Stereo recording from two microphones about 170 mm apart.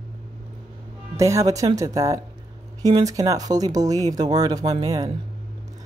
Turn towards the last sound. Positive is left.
turn(degrees=-20)  # may be behind; listen again after turning